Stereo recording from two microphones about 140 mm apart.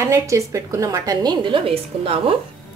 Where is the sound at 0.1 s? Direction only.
25° right (ahead or behind).